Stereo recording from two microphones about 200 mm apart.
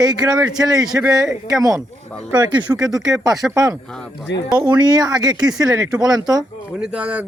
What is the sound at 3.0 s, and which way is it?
Speech, 15° right (ahead or behind).